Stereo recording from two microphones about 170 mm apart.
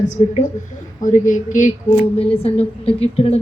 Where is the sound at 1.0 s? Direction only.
50° left (ahead or behind).